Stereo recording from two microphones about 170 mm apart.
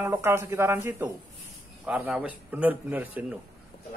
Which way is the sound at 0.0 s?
15° right (ahead or behind).